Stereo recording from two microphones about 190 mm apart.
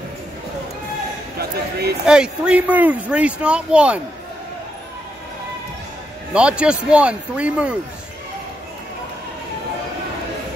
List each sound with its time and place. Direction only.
1.4 s speech: 55° right (ahead or behind)
2.0 s speech: 5° right (ahead or behind)
6.3 s speech: 5° right (ahead or behind)